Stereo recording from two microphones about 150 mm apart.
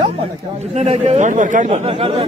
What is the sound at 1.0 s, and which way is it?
Speech, 55° right (ahead or behind).